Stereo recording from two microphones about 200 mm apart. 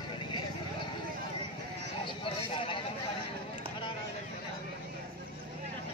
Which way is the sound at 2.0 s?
25° left (ahead or behind).